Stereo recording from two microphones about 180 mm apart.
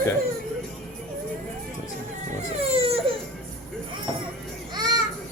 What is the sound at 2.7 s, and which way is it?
Crying, 35° right (ahead or behind).